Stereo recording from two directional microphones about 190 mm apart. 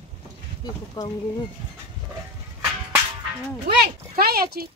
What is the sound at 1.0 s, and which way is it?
Speech, 20° left (ahead or behind).